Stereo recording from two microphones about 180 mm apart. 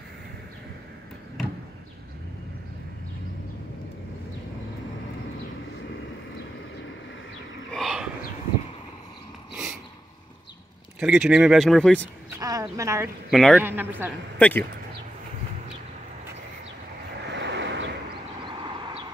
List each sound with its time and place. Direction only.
7.7 s bird: centre (ahead or behind)
11.0 s speech: 5° right (ahead or behind)
12.3 s a sound: 20° right (ahead or behind)
12.7 s a man's voice: 15° right (ahead or behind)
13.3 s speech: centre (ahead or behind)
13.6 s a man's voice: 10° right (ahead or behind)
14.4 s speech: 10° left (ahead or behind)
17.3 s vehicle: 75° right (ahead or behind)
18.4 s vehicle: 25° right (ahead or behind)